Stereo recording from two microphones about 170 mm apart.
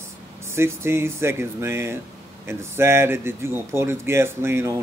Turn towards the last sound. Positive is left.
turn(degrees=-15)  # may be behind; listen again after turning